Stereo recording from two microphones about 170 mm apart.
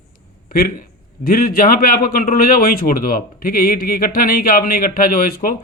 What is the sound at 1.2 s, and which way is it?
A man's voice, 65° left (ahead or behind).